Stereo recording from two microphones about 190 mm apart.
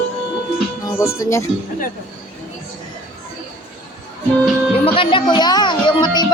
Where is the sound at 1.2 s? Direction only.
15° left (ahead or behind).